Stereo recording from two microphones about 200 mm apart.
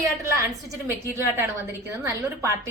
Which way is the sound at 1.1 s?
10° right (ahead or behind).